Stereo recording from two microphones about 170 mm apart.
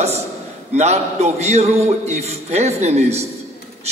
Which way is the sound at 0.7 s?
40° right (ahead or behind).